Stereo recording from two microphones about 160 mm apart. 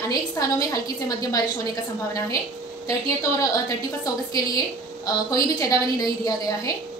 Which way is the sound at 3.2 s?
20° left (ahead or behind).